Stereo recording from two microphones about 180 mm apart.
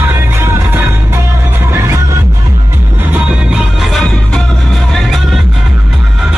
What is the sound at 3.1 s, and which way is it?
Music, 5° right (ahead or behind).